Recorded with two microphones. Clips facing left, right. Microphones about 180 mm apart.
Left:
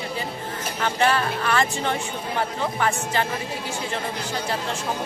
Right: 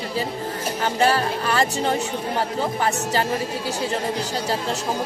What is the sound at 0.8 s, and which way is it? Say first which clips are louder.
Speech: right 2 dB; 35° right (ahead or behind).